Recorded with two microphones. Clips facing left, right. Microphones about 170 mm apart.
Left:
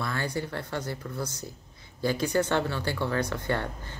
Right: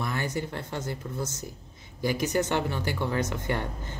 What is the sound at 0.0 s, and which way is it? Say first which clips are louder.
Speech: even; 15° right (ahead or behind).